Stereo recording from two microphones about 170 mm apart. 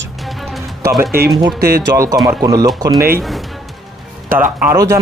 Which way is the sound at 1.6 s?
65° right (ahead or behind).